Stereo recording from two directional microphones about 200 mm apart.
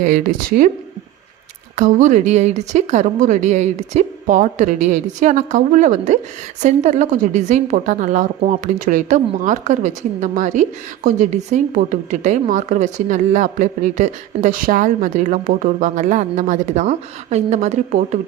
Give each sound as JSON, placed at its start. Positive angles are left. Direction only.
{"t": 0.0, "sound": "a woman's voice", "side_deg": -40}
{"t": 1.7, "sound": "a woman's voice", "side_deg": -40}